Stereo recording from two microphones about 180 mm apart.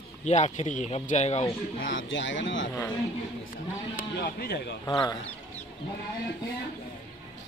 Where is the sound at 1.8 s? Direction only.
90° left.